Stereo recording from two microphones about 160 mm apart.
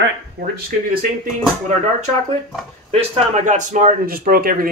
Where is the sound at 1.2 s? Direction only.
50° right (ahead or behind).